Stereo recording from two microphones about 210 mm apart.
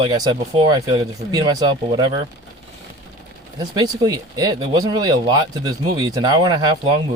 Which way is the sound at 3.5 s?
20° right (ahead or behind).